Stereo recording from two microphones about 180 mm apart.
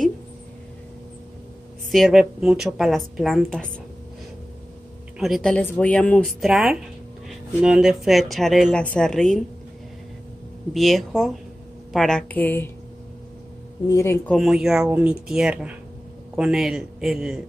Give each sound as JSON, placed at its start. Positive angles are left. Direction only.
{"t": 1.9, "sound": "speech", "side_deg": 0}
{"t": 5.2, "sound": "speech", "side_deg": 0}
{"t": 10.7, "sound": "a woman's voice", "side_deg": 0}
{"t": 13.8, "sound": "a woman's voice", "side_deg": 15}
{"t": 14.3, "sound": "speech", "side_deg": 0}